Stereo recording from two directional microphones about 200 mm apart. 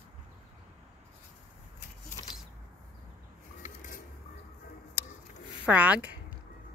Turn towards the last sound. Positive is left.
turn(degrees=-5)  # may be behind; listen again after turning